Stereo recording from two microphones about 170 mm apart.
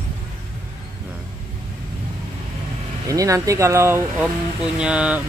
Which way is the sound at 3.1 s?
20° right (ahead or behind).